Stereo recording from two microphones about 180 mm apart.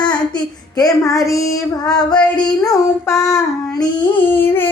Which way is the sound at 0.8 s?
20° left (ahead or behind).